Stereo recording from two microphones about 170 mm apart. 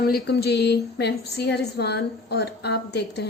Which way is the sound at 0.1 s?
70° left (ahead or behind).